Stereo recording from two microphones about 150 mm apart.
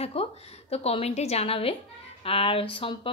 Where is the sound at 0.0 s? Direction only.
40° left (ahead or behind).